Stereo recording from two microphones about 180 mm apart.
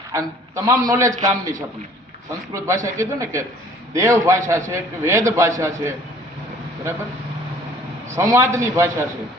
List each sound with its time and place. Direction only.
0.1 s a man's voice: 15° right (ahead or behind)
8.1 s a man's voice: 15° right (ahead or behind)